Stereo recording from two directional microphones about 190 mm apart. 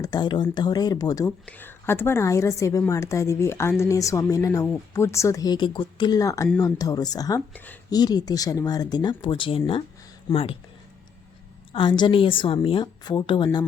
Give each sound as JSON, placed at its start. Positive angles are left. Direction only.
{"t": 0.0, "sound": "a woman's voice", "side_deg": 20}
{"t": 7.5, "sound": "a woman's voice", "side_deg": 10}
{"t": 7.9, "sound": "speech", "side_deg": 20}
{"t": 11.7, "sound": "speech", "side_deg": 25}